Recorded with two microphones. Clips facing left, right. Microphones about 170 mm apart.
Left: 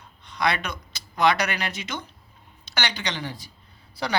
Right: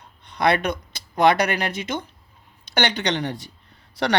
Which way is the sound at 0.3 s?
55° right (ahead or behind).